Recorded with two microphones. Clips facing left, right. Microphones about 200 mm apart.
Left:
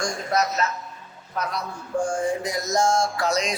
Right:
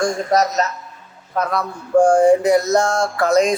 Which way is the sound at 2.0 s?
70° right (ahead or behind).